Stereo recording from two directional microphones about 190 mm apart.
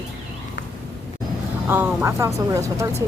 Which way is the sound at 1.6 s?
10° right (ahead or behind).